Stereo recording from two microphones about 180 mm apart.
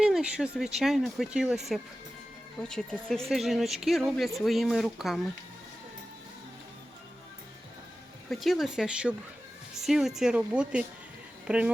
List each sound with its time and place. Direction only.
0.0 s speech: 5° right (ahead or behind)
8.3 s speech: centre (ahead or behind)